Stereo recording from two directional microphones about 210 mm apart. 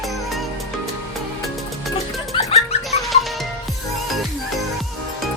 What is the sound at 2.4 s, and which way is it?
Music, 30° left (ahead or behind).